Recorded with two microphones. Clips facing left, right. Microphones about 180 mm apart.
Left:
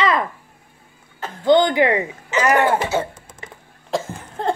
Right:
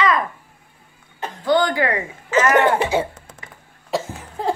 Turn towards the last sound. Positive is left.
turn(degrees=0)  # may be behind; listen again after turning